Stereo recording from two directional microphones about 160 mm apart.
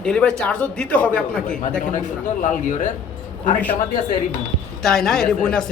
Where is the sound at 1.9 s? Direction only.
50° left (ahead or behind).